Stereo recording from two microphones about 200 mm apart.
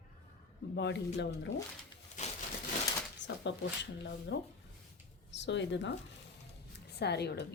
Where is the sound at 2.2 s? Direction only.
35° left (ahead or behind).